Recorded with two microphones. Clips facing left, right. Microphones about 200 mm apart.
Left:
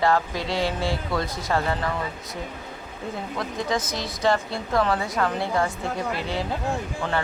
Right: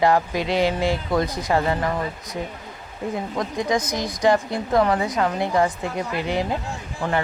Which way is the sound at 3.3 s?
15° right (ahead or behind).